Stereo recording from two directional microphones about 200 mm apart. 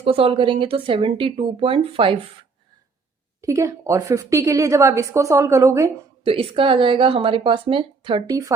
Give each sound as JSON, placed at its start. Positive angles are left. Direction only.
{"t": 0.0, "sound": "speech", "side_deg": -30}
{"t": 3.4, "sound": "a woman's voice", "side_deg": -15}
{"t": 6.2, "sound": "speech", "side_deg": -30}